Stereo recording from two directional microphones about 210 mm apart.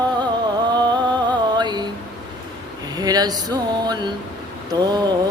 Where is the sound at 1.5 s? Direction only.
20° right (ahead or behind).